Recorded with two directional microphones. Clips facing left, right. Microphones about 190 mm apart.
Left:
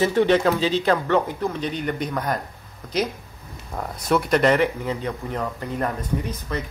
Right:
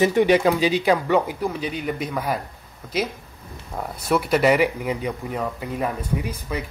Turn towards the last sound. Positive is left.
turn(degrees=-10)  # may be behind; listen again after turning